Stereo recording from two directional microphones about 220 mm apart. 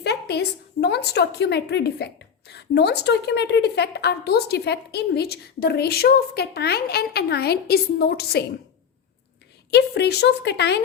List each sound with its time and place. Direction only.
0.0 s a woman's voice: 50° left (ahead or behind)
9.7 s a woman's voice: 50° left (ahead or behind)